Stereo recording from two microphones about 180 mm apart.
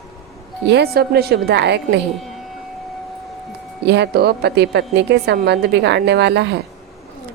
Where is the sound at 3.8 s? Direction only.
70° right (ahead or behind).